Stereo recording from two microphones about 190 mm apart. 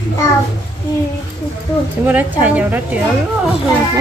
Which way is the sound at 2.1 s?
10° right (ahead or behind).